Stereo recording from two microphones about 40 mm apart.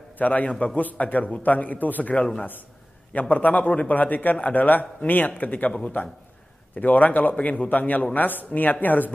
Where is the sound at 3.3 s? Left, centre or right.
Left.